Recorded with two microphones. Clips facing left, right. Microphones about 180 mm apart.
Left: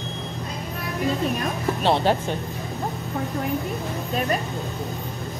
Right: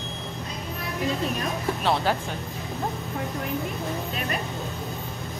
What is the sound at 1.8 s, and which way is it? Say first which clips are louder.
Speech: left 5 dB; 30° left (ahead or behind).